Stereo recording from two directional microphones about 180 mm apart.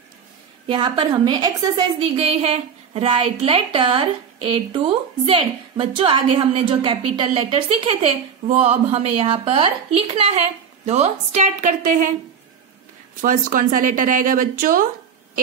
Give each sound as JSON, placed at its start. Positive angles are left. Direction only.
{"t": 0.7, "sound": "a woman's voice", "side_deg": -25}
{"t": 2.1, "sound": "a woman's voice", "side_deg": -35}
{"t": 13.2, "sound": "speech", "side_deg": -50}